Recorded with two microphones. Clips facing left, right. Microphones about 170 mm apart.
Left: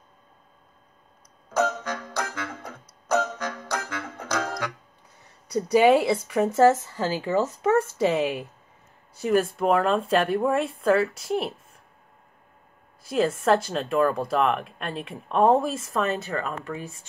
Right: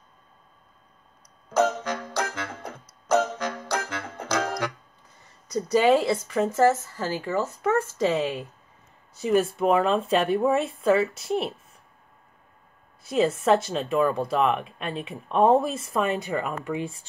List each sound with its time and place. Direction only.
1.6 s music: 15° right (ahead or behind)
5.7 s speech: 15° left (ahead or behind)
9.2 s speech: centre (ahead or behind)
13.1 s speech: 5° right (ahead or behind)